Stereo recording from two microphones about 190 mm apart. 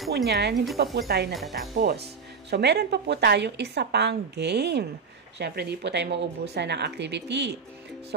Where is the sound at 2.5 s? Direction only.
60° right (ahead or behind).